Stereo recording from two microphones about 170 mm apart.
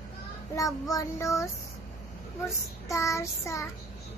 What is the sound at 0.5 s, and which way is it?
Child singing, 20° left (ahead or behind).